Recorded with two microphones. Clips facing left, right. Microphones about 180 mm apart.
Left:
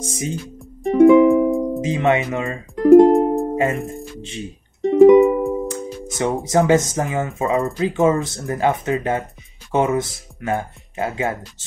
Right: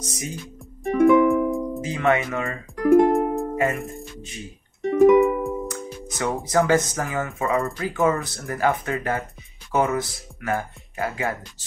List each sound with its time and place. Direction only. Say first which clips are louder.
0.0 s speech: left 7 dB; 25° left (ahead or behind)
0.9 s music: left 6 dB; 20° left (ahead or behind)
1.8 s speech: left 4 dB; 20° left (ahead or behind)
3.4 s music: left 3 dB; 25° left (ahead or behind)
3.7 s speech: left 5 dB; centre (ahead or behind)
4.2 s speech: left 7 dB; 25° left (ahead or behind)
4.8 s music: left 5 dB; 20° left (ahead or behind)
6.4 s speech: left 3 dB; 25° left (ahead or behind)